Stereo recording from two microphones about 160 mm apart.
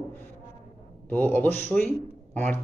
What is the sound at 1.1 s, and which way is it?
Speech, 10° left (ahead or behind).